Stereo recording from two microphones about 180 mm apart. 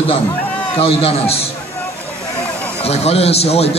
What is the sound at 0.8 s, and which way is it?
Speech, 35° left (ahead or behind).